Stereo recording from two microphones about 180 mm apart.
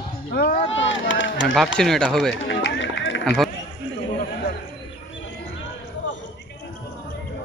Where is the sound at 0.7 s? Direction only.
90° left.